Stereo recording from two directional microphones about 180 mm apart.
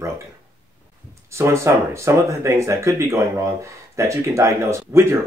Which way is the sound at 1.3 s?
15° right (ahead or behind).